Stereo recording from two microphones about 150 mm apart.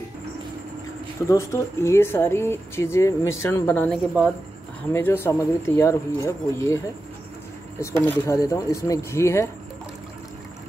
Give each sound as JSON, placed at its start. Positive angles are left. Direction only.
{"t": 1.3, "sound": "speech", "side_deg": 20}
{"t": 3.9, "sound": "speech", "side_deg": -5}
{"t": 4.9, "sound": "speech", "side_deg": 15}
{"t": 7.8, "sound": "speech", "side_deg": 15}